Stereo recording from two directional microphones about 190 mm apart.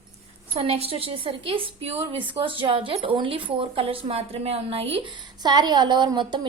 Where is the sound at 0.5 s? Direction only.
30° right (ahead or behind).